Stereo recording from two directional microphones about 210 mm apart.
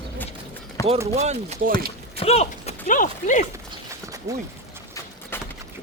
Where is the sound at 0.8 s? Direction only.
15° left (ahead or behind).